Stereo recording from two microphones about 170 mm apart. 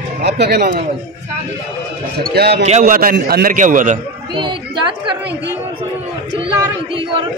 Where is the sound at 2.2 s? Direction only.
65° right (ahead or behind).